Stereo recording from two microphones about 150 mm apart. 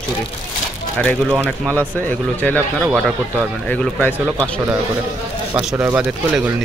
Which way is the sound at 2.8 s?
5° right (ahead or behind).